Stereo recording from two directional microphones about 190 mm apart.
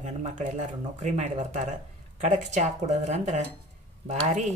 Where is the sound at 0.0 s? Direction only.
40° right (ahead or behind).